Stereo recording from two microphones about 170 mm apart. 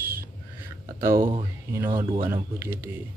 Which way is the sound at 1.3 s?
20° right (ahead or behind).